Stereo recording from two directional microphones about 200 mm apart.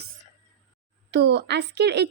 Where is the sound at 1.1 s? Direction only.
60° right (ahead or behind).